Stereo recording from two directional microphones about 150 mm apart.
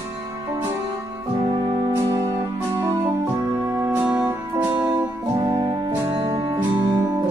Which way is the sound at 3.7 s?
15° right (ahead or behind).